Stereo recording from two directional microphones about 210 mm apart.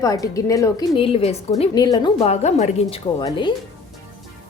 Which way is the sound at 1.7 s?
20° left (ahead or behind).